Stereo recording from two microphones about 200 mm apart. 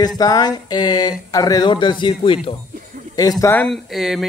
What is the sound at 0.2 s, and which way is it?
A man's voice, 20° left (ahead or behind).